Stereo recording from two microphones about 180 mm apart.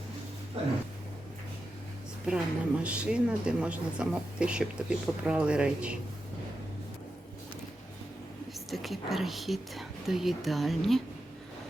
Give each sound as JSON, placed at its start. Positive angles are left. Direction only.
{"t": 2.2, "sound": "a woman's voice", "side_deg": -5}
{"t": 8.5, "sound": "a woman's voice", "side_deg": 0}